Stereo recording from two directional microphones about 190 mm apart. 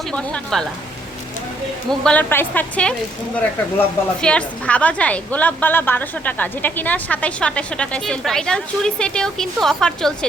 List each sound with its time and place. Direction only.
0.1 s a woman's voice: 5° left (ahead or behind)
1.9 s a woman's voice: 5° left (ahead or behind)